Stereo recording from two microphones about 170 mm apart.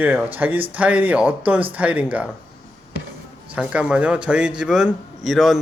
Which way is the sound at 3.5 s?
5° right (ahead or behind).